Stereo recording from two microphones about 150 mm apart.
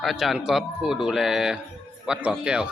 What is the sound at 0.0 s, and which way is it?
Speech, centre (ahead or behind).